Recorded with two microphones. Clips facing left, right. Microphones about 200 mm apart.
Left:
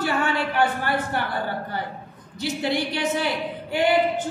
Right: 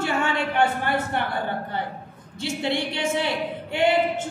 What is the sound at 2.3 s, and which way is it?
Speech, 25° right (ahead or behind).